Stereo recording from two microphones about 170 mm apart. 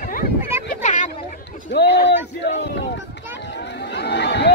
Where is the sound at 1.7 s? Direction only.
80° left.